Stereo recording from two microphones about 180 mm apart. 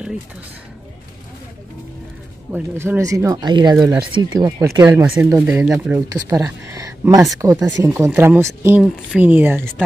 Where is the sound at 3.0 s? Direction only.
20° right (ahead or behind).